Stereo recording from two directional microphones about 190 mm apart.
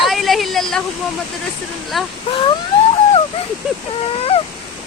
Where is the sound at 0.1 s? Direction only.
Centre (ahead or behind).